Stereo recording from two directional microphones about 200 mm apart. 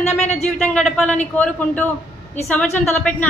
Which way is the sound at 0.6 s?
5° left (ahead or behind).